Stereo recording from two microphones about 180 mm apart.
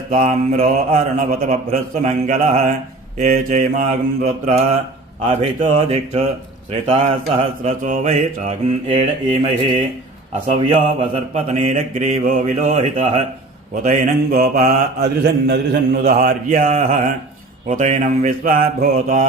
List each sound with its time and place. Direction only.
0.1 s mantra: 35° right (ahead or behind)
0.9 s mantra: 50° right (ahead or behind)